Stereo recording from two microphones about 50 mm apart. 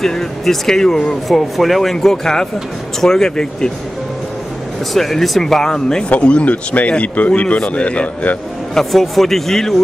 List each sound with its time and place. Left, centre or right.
0.0 s speech: centre
4.9 s speech: centre
6.0 s speech: left
8.7 s speech: centre